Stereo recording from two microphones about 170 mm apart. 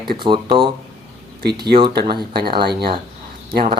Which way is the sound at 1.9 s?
65° right (ahead or behind).